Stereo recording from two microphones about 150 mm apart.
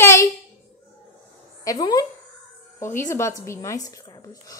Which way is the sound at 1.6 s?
25° left (ahead or behind).